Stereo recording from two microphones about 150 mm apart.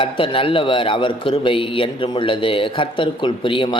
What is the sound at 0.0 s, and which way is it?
A man's voice, 35° left (ahead or behind).